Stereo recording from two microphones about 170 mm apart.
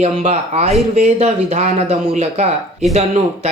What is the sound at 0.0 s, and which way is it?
Speech, 40° right (ahead or behind).